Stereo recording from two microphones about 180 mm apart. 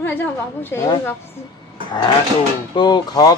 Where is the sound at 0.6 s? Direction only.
20° left (ahead or behind).